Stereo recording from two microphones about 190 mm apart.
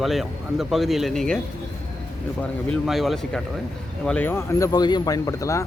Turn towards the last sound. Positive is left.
turn(degrees=15)  # may be behind; listen again after turning